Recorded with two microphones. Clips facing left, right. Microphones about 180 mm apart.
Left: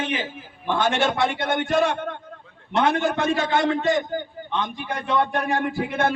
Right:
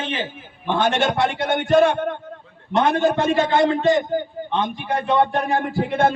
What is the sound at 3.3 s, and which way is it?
A man's voice, 25° right (ahead or behind).